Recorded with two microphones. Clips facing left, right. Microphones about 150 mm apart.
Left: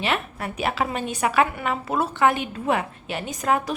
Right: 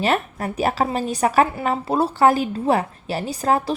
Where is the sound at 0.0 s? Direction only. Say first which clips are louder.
Right 5 dB; 40° right (ahead or behind).